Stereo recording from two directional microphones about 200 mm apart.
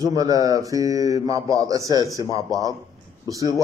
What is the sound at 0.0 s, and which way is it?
Mantra, 15° right (ahead or behind).